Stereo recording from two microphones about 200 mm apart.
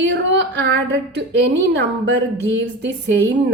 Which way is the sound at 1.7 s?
60° right (ahead or behind).